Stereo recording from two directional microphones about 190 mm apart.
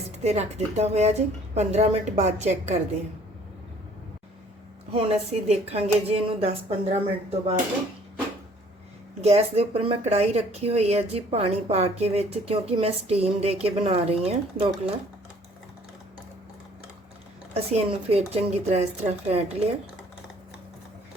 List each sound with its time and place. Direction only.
0.2 s speech: 35° right (ahead or behind)
4.9 s speech: 35° right (ahead or behind)
9.2 s speech: 35° right (ahead or behind)
17.5 s speech: 35° right (ahead or behind)